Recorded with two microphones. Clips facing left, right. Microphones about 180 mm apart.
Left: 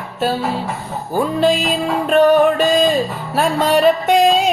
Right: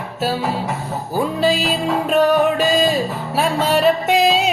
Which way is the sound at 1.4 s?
5° right (ahead or behind).